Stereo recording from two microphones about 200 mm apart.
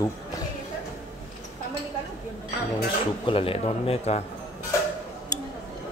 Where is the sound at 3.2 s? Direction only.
25° left (ahead or behind).